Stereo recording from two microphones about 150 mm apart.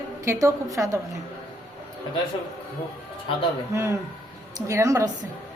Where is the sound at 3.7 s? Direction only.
20° right (ahead or behind).